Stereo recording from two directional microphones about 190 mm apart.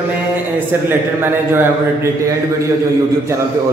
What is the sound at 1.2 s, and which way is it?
Speech, 10° right (ahead or behind).